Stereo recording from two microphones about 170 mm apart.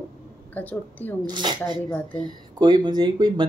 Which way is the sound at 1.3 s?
25° right (ahead or behind).